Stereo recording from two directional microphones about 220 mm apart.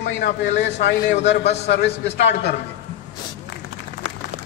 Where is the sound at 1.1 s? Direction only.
30° left (ahead or behind).